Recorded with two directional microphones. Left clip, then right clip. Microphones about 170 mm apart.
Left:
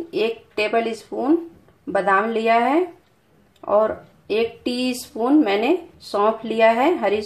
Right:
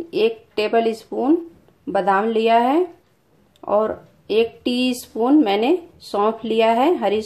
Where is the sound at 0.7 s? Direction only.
30° right (ahead or behind).